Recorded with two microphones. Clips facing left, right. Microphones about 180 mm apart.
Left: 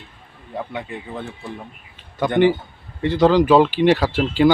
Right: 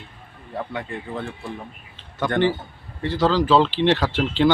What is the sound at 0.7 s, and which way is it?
Speech, 15° left (ahead or behind).